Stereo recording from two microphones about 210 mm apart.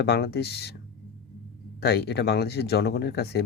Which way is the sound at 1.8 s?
50° left (ahead or behind).